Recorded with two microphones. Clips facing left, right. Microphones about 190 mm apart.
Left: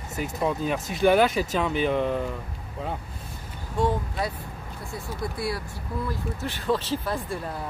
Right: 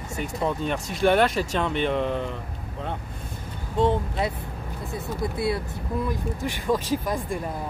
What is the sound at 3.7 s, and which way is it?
Speech, 25° right (ahead or behind).